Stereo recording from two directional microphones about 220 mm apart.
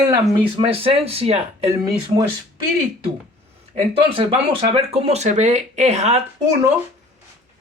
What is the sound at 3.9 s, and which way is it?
Speech, 25° right (ahead or behind).